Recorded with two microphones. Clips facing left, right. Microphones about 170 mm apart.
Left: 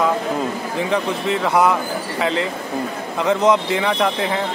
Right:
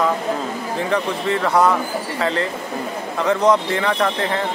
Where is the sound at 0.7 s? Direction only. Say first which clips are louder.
Even; 15° left (ahead or behind).